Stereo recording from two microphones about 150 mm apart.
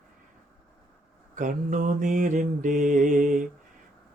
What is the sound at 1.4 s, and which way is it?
Mantra, 60° right (ahead or behind).